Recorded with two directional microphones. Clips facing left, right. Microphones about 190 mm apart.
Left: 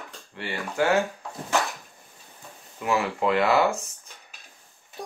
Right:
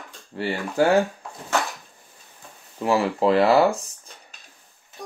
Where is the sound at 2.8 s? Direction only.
35° right (ahead or behind).